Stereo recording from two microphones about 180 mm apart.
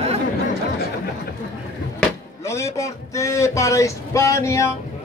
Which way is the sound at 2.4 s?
15° left (ahead or behind).